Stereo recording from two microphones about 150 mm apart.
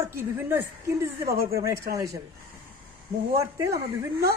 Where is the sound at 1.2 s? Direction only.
90° right.